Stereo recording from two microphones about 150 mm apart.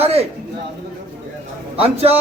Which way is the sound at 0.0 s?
45° right (ahead or behind).